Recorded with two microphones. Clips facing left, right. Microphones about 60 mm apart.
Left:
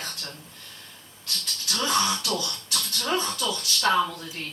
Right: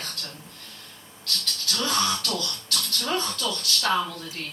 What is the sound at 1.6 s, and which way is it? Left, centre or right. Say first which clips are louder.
Music: left 1 dB; centre.